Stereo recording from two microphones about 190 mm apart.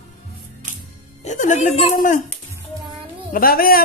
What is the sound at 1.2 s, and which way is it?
Speech, 40° left (ahead or behind).